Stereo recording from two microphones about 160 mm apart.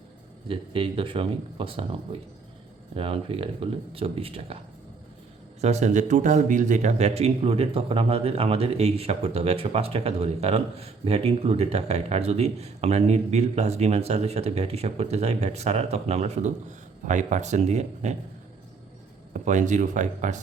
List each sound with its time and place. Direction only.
0.4 s speech: 35° right (ahead or behind)
5.5 s speech: 45° right (ahead or behind)
19.3 s speech: 50° right (ahead or behind)